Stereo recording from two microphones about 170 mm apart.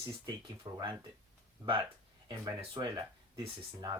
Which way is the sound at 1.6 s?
30° right (ahead or behind).